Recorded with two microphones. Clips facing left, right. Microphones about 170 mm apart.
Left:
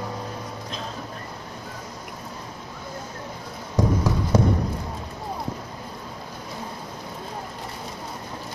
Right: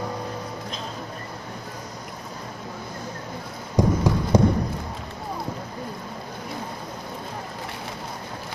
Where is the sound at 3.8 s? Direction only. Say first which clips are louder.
Right 2 dB; 15° right (ahead or behind).